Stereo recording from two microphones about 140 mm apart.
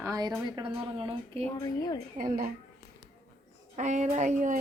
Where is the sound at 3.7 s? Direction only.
55° right (ahead or behind).